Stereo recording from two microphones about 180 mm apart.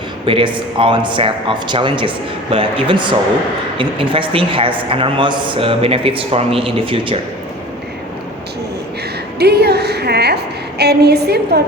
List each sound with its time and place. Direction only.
0.3 s a man's voice: 30° right (ahead or behind)
9.4 s a sound: 65° right (ahead or behind)
10.8 s a woman's voice: 65° right (ahead or behind)